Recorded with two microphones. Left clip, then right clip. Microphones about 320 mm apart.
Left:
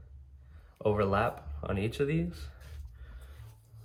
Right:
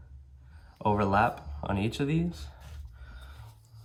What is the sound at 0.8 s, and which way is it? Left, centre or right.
Speech, centre.